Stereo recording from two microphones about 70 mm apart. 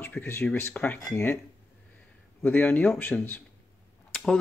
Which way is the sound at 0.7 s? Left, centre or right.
Centre.